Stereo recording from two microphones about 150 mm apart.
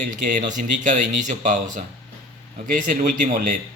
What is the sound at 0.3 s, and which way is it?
Speech, 60° right (ahead or behind).